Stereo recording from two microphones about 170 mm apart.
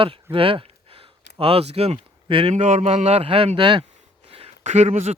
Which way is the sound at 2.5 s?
45° right (ahead or behind).